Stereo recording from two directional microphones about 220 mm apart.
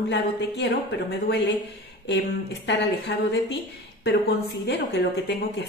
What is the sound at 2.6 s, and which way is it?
Speech, 50° left (ahead or behind).